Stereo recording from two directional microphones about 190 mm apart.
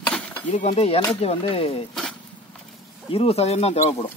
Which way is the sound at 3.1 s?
30° left (ahead or behind).